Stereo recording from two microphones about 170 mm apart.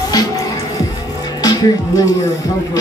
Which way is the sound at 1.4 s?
20° left (ahead or behind).